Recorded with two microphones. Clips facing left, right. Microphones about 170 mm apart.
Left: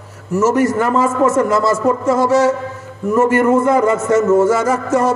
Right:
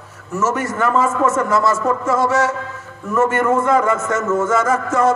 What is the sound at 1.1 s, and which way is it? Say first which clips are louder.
A man's voice: left 3 dB; 35° left (ahead or behind).